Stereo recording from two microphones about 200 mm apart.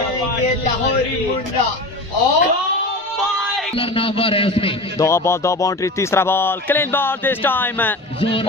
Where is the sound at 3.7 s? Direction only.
25° left (ahead or behind).